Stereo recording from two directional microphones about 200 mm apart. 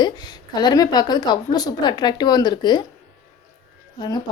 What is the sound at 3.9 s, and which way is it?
Speech, 20° left (ahead or behind).